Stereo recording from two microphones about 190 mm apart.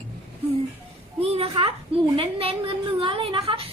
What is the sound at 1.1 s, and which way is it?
A child's voice, 30° right (ahead or behind).